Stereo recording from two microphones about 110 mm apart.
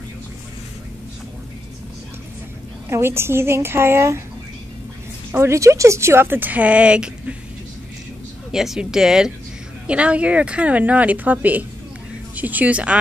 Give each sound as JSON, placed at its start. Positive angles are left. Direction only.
{"t": 2.9, "sound": "speech", "side_deg": -20}
{"t": 5.3, "sound": "speech", "side_deg": -25}
{"t": 8.5, "sound": "a woman's voice", "side_deg": -5}